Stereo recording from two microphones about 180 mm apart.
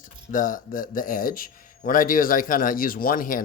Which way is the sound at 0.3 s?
50° left (ahead or behind).